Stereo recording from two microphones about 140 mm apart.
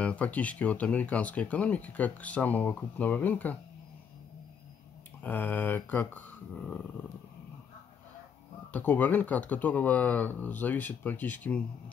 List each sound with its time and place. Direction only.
0.0 s speech: 10° left (ahead or behind)
5.2 s speech: 15° left (ahead or behind)
8.7 s speech: 10° left (ahead or behind)